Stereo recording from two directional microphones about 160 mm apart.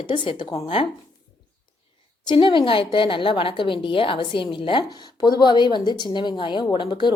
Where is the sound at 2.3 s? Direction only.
30° left (ahead or behind).